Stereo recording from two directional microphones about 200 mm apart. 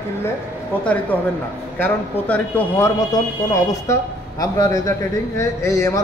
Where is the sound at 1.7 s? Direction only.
10° left (ahead or behind).